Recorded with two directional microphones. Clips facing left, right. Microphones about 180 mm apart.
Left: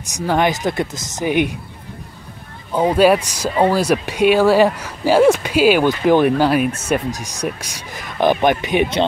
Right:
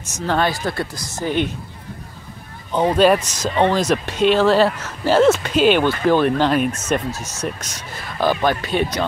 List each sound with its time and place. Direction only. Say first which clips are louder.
0.1 s speech: left 3 dB; 15° left (ahead or behind)
2.7 s speech: left 1 dB; 10° left (ahead or behind)